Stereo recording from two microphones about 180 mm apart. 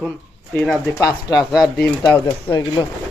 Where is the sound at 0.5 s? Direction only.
5° left (ahead or behind).